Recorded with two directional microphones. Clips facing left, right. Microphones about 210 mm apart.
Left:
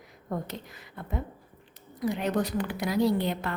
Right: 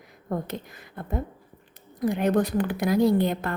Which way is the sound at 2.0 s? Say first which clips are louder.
Right 5 dB; 50° right (ahead or behind).